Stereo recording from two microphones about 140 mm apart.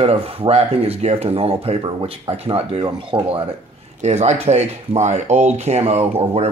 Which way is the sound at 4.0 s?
55° right (ahead or behind).